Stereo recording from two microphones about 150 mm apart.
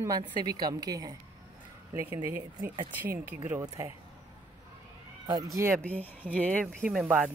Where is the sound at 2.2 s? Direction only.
15° right (ahead or behind).